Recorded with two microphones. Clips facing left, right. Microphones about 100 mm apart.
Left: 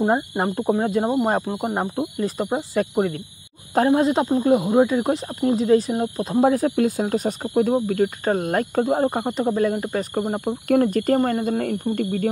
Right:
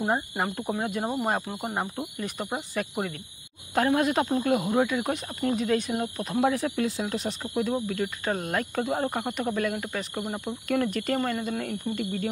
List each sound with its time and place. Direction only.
0.4 s speech: 35° left (ahead or behind)
1.0 s speech: 20° left (ahead or behind)
1.3 s speech: 35° left (ahead or behind)
3.9 s speech: 25° left (ahead or behind); by 12.3 s 50° left (ahead or behind)